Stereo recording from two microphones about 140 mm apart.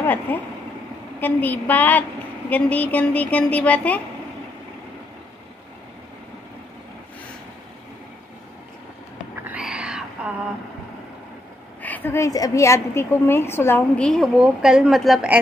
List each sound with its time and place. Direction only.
0.0 s a woman's voice: 15° left (ahead or behind)
9.3 s a sound: 10° right (ahead or behind)
11.8 s a woman's voice: 10° left (ahead or behind)